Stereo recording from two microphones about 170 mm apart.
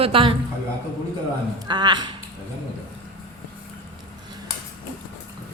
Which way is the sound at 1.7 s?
25° right (ahead or behind).